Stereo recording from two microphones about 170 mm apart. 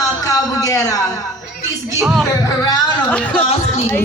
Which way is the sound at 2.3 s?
20° left (ahead or behind).